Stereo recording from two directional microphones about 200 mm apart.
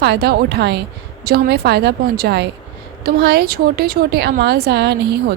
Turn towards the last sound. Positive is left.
turn(degrees=-55)  # may be behind; listen again after turning